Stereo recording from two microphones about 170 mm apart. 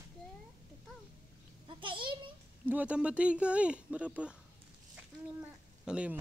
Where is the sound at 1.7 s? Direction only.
30° right (ahead or behind).